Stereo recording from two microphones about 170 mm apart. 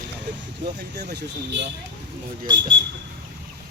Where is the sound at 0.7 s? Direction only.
70° right (ahead or behind).